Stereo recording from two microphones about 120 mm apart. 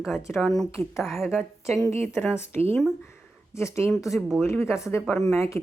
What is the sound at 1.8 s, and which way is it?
Speech, 25° left (ahead or behind).